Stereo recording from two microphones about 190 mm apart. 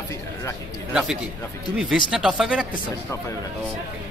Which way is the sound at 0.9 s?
5° right (ahead or behind).